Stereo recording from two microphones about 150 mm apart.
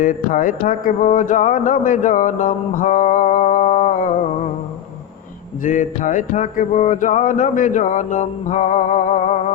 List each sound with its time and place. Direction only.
0.0 s speech: 65° left (ahead or behind)
5.6 s speech: 60° left (ahead or behind)